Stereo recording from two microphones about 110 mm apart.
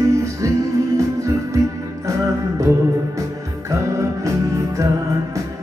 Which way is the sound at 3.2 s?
30° right (ahead or behind).